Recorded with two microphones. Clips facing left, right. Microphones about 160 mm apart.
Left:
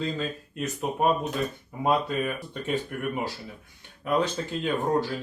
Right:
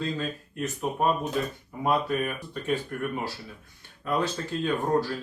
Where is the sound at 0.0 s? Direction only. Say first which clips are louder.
Left 1 dB; 20° left (ahead or behind).